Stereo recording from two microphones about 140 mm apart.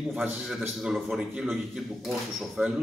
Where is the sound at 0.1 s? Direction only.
5° right (ahead or behind).